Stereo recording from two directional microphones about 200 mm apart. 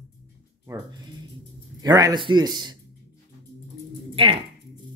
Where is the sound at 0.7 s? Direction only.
15° right (ahead or behind).